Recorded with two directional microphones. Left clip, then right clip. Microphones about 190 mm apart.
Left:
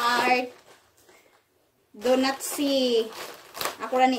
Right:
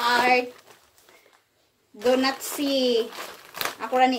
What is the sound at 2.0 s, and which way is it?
Speech, 5° right (ahead or behind).